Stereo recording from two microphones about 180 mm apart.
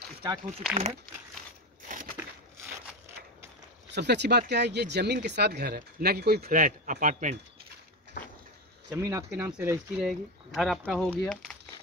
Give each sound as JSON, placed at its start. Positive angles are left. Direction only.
{"t": 0.2, "sound": "speech", "side_deg": -25}
{"t": 1.9, "sound": "a sound", "side_deg": -45}
{"t": 3.9, "sound": "speech", "side_deg": -70}
{"t": 8.9, "sound": "speech", "side_deg": -15}
{"t": 10.0, "sound": "speech", "side_deg": 0}